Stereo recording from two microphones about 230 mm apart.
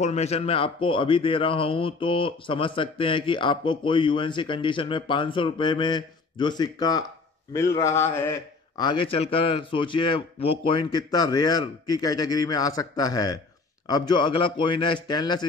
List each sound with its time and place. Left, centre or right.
0.0 s a man's voice: left